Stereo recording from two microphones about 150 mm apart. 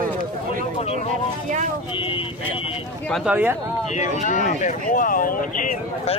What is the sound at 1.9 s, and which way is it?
Speech, 35° left (ahead or behind).